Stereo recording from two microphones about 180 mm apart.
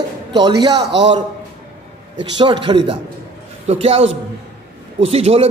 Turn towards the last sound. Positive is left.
turn(degrees=-35)  # may be behind; listen again after turning